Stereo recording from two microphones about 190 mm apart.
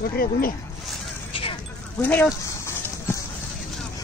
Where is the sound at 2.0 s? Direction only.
10° left (ahead or behind).